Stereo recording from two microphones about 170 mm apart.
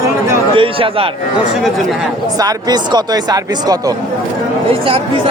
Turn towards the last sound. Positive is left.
turn(degrees=-25)  # may be behind; listen again after turning